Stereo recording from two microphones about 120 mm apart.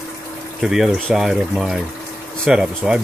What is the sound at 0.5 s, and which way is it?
Speech, 5° right (ahead or behind).